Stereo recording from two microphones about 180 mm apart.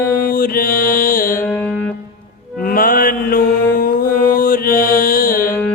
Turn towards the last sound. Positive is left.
turn(degrees=55)  # may be behind; listen again after turning